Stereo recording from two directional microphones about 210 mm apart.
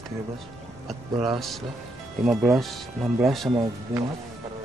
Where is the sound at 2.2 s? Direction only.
Centre (ahead or behind).